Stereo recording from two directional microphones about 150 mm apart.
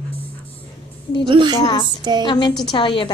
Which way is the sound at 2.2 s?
30° left (ahead or behind).